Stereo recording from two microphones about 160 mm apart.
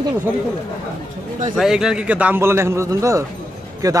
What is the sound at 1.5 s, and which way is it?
A man's voice, 5° right (ahead or behind).